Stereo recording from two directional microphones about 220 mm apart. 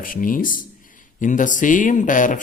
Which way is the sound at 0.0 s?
40° left (ahead or behind).